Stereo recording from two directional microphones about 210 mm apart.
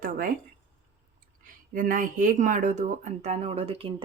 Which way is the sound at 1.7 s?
40° right (ahead or behind).